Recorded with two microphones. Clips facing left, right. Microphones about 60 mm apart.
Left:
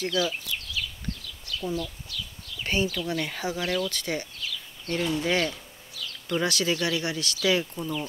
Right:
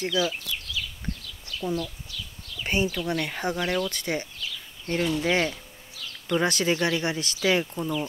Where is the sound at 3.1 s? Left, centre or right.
Centre.